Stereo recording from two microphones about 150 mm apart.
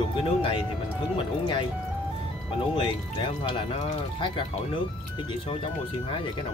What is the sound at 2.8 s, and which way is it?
Speech, 35° left (ahead or behind).